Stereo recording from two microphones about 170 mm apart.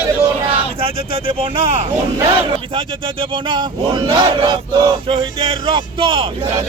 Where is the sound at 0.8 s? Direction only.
35° right (ahead or behind).